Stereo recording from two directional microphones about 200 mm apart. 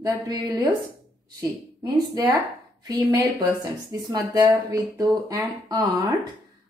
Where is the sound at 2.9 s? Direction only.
20° right (ahead or behind).